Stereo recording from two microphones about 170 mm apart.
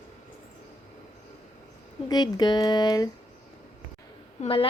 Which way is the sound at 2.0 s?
25° left (ahead or behind).